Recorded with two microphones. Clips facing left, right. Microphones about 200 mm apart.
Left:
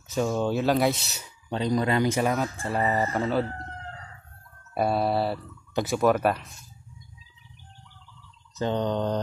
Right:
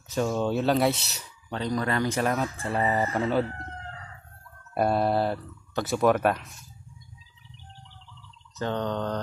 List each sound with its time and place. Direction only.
0.1 s speech: 5° left (ahead or behind)
1.5 s speech: 20° left (ahead or behind)
2.1 s speech: 5° left (ahead or behind)
4.7 s speech: 5° left (ahead or behind)
8.5 s mantra: 15° left (ahead or behind)